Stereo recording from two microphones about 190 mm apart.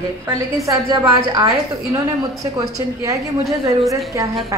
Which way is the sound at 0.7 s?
15° right (ahead or behind).